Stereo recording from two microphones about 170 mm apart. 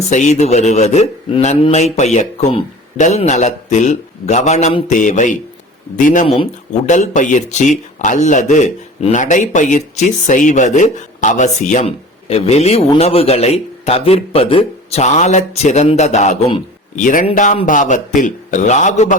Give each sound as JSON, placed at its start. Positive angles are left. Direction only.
{"t": 0.1, "sound": "speech", "side_deg": 45}
{"t": 4.9, "sound": "speech", "side_deg": 50}